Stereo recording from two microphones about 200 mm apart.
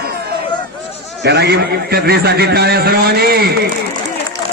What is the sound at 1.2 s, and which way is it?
A man's voice, 55° right (ahead or behind).